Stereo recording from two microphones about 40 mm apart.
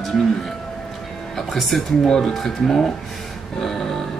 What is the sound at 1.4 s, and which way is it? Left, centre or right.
Speech, centre.